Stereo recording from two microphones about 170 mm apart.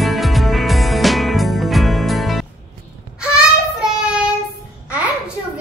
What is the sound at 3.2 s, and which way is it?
Child singing, 5° right (ahead or behind).